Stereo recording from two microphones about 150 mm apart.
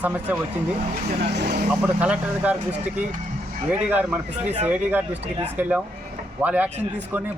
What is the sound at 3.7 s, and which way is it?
Speech, 10° right (ahead or behind).